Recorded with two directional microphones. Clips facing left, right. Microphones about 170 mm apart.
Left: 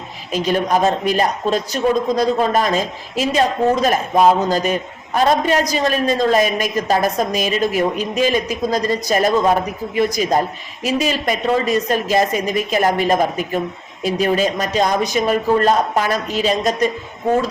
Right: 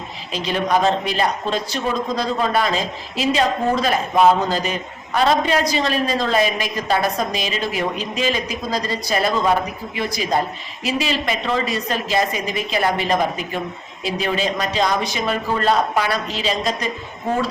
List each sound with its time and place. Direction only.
0.3 s a man's voice: 45° left (ahead or behind)
10.8 s a man's voice: 45° left (ahead or behind)